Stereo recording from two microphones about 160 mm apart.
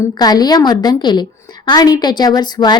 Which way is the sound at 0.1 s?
25° left (ahead or behind).